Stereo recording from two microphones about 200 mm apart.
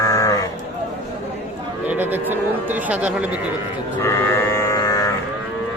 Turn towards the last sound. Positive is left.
turn(degrees=15)  # may be behind; listen again after turning